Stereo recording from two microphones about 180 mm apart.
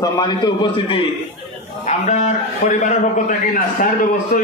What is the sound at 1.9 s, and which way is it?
A man's voice, 40° left (ahead or behind).